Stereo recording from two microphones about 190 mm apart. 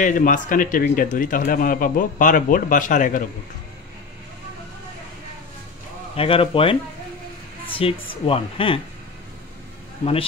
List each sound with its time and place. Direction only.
0.0 s speech: 45° left (ahead or behind)
6.1 s speech: 30° left (ahead or behind)
7.8 s speech: 30° left (ahead or behind)